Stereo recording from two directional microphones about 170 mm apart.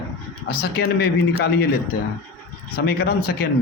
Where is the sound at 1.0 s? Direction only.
75° left (ahead or behind).